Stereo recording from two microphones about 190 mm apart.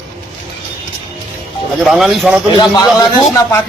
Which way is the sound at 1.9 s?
Centre (ahead or behind).